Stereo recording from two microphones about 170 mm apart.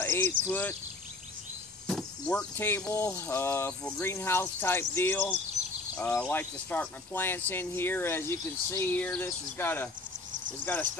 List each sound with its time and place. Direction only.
0.0 s a sound: 15° left (ahead or behind)
0.5 s speech: 10° left (ahead or behind)
1.9 s speech: 5° left (ahead or behind)